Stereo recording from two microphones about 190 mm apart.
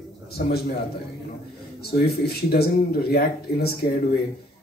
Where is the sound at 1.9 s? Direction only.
55° left (ahead or behind).